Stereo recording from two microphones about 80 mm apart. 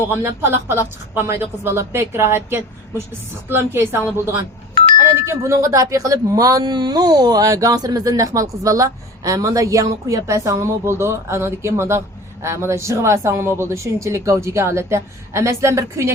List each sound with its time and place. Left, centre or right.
0.1 s a woman's voice: right